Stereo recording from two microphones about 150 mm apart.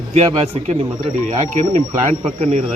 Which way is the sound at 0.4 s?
45° right (ahead or behind).